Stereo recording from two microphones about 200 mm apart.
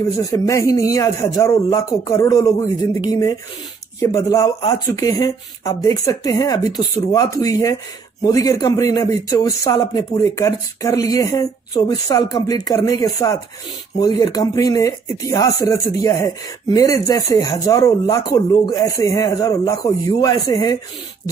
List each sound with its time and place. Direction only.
0.2 s speech: 15° left (ahead or behind)